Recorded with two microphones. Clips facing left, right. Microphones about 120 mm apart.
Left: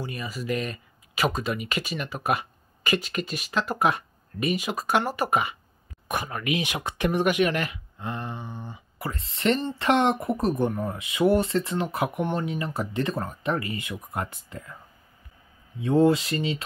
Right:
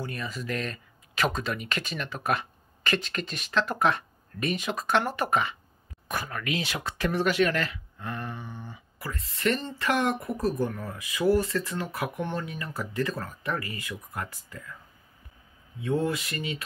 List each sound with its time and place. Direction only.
0.0 s speech: 5° left (ahead or behind); by 14.8 s 30° left (ahead or behind)
15.8 s speech: 30° left (ahead or behind)